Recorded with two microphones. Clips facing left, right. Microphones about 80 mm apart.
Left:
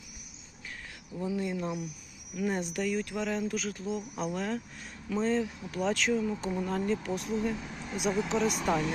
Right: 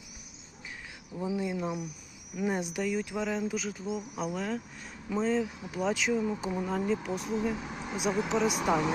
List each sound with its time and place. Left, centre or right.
1.1 s speech: centre